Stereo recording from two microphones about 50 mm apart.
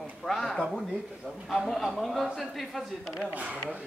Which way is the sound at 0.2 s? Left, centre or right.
Centre.